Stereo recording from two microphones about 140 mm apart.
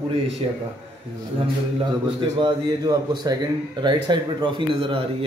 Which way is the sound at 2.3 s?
30° right (ahead or behind).